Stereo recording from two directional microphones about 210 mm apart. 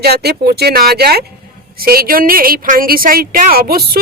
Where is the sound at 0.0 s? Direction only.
50° right (ahead or behind).